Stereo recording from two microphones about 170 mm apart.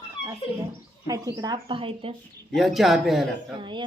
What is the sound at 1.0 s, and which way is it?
A woman's voice, 20° right (ahead or behind).